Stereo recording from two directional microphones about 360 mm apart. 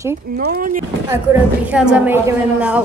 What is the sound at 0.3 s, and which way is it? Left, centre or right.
Speech, right.